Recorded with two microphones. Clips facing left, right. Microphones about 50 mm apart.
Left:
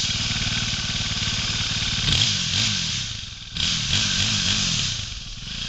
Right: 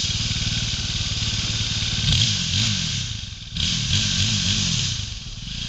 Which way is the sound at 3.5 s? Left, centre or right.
Centre.